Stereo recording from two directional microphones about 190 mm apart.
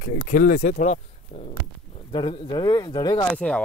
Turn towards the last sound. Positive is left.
turn(degrees=5)  # may be behind; listen again after turning